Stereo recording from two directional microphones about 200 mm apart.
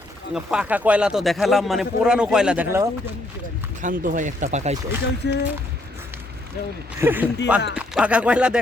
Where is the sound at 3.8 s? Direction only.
40° right (ahead or behind).